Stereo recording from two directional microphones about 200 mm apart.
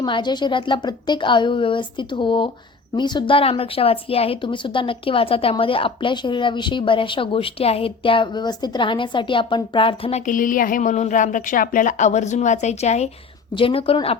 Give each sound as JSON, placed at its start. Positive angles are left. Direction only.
{"t": 0.0, "sound": "speech", "side_deg": 20}